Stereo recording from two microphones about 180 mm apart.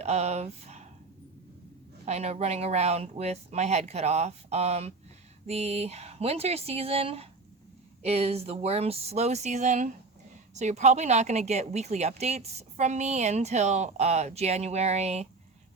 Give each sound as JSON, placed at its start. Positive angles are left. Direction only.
{"t": 0.0, "sound": "speech", "side_deg": -35}
{"t": 2.0, "sound": "speech", "side_deg": -35}